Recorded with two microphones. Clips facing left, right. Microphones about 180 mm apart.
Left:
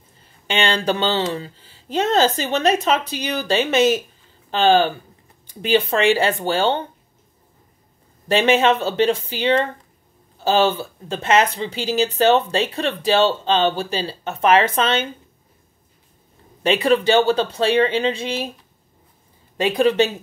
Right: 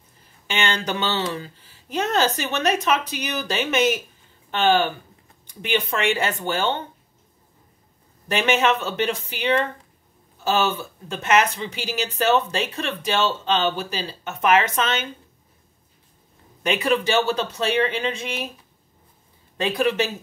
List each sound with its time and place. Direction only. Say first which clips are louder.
0.5 s speech: left 5 dB; 30° left (ahead or behind)
8.3 s speech: left 4 dB; 30° left (ahead or behind)
16.6 s speech: left 5 dB; 30° left (ahead or behind)
19.5 s speech: left 5 dB; 30° left (ahead or behind)